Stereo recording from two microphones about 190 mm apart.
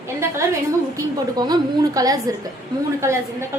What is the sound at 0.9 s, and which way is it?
A woman's voice, 20° right (ahead or behind).